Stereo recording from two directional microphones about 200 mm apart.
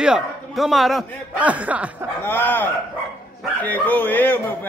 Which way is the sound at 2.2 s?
10° left (ahead or behind).